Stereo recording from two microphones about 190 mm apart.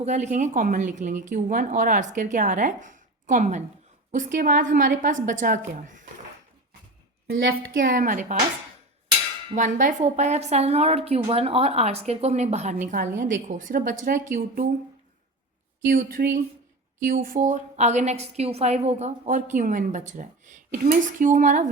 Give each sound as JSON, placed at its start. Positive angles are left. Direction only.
{"t": 0.0, "sound": "a woman's voice", "side_deg": -35}
{"t": 7.3, "sound": "a woman's voice", "side_deg": -80}
{"t": 7.9, "sound": "speech", "side_deg": -45}
{"t": 9.6, "sound": "a woman's voice", "side_deg": -40}
{"t": 15.9, "sound": "a woman's voice", "side_deg": -45}